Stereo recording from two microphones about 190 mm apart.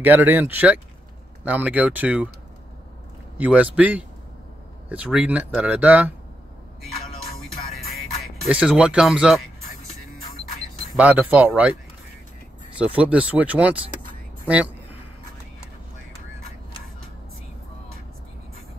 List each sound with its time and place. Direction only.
0.0 s speech: 10° right (ahead or behind)
3.3 s speech: 10° right (ahead or behind)
7.7 s music: centre (ahead or behind)
11.0 s speech: 5° right (ahead or behind)
12.7 s speech: 5° right (ahead or behind)